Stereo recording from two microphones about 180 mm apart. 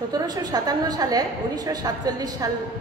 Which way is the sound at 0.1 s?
20° right (ahead or behind).